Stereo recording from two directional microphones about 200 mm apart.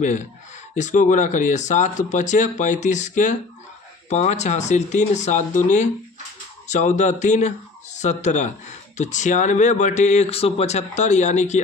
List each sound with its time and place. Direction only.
0.7 s speech: 40° left (ahead or behind)